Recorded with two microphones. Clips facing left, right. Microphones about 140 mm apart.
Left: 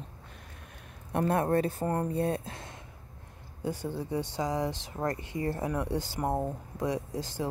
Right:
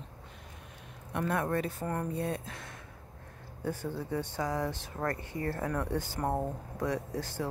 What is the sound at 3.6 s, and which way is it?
Speech, 15° left (ahead or behind).